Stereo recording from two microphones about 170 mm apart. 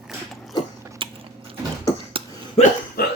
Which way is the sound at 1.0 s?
30° right (ahead or behind).